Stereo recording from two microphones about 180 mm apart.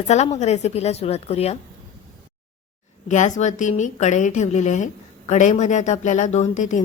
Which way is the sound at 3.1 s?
40° left (ahead or behind).